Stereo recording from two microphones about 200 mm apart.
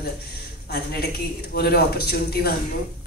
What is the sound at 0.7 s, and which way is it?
A woman's voice, 50° left (ahead or behind).